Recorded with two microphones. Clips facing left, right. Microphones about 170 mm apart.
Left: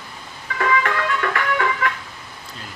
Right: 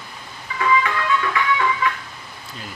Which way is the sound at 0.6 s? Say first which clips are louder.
Even; 55° left (ahead or behind).